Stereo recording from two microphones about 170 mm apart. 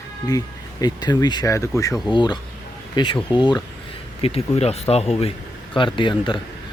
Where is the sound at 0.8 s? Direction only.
25° left (ahead or behind).